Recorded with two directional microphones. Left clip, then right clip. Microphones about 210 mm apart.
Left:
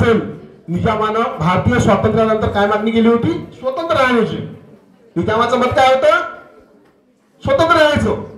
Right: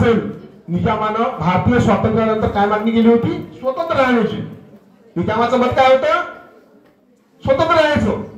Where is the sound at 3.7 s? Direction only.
50° left (ahead or behind).